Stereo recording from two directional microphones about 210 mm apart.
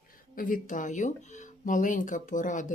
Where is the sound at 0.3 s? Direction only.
40° left (ahead or behind).